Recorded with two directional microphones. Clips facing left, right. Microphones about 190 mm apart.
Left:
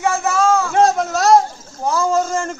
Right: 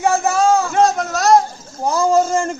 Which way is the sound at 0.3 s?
15° right (ahead or behind).